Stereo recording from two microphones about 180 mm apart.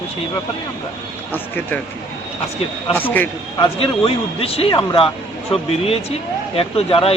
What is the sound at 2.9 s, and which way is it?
Speech, 10° left (ahead or behind).